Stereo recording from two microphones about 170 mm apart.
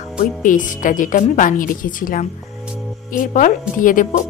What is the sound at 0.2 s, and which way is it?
Speech, 50° left (ahead or behind).